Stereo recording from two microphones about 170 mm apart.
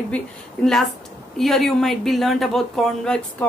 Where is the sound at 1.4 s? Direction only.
Centre (ahead or behind).